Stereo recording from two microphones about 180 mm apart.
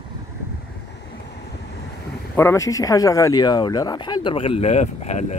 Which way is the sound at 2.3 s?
15° left (ahead or behind).